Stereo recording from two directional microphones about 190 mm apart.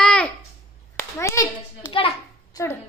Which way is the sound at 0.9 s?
15° left (ahead or behind).